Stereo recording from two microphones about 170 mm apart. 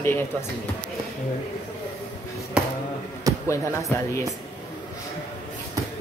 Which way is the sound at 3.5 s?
15° left (ahead or behind).